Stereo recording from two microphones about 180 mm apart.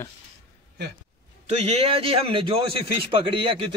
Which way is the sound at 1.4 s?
35° right (ahead or behind).